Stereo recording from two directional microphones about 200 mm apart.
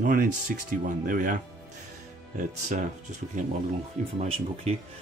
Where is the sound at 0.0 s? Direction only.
45° right (ahead or behind).